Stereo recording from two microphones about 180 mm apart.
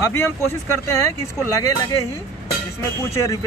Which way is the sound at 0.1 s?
15° left (ahead or behind).